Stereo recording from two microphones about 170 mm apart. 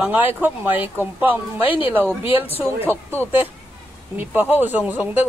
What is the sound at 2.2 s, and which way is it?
Speech, 35° left (ahead or behind).